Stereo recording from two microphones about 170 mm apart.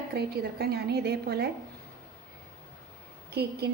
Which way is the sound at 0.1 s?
70° right (ahead or behind).